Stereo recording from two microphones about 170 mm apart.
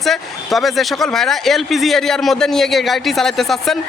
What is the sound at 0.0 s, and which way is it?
Speech, centre (ahead or behind).